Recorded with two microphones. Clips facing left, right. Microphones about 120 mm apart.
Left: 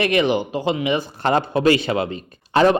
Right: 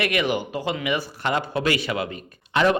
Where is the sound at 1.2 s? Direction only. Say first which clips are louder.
Left 9 dB; 35° left (ahead or behind).